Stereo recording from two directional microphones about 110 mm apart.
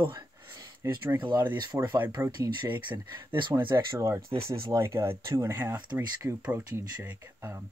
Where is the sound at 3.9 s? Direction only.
30° right (ahead or behind).